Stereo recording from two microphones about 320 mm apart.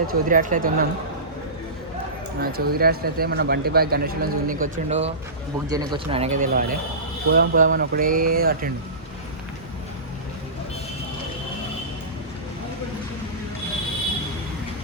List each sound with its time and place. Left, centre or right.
0.1 s speech: right
2.4 s speech: right